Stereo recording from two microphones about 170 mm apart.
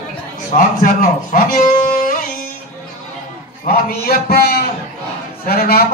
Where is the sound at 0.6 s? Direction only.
50° left (ahead or behind).